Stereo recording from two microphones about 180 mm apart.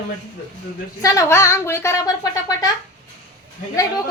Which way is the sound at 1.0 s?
15° left (ahead or behind).